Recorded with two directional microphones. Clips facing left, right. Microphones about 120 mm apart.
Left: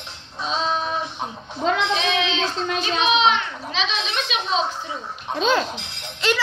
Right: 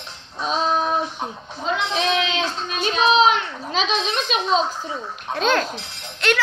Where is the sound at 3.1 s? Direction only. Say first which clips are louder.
Right 3 dB; 40° right (ahead or behind).